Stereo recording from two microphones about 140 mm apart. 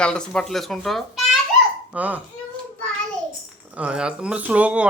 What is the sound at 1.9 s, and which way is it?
Speech, 10° right (ahead or behind).